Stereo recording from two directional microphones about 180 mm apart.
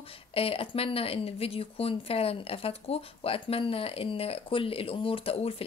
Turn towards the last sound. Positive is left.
turn(degrees=30)  # may be behind; listen again after turning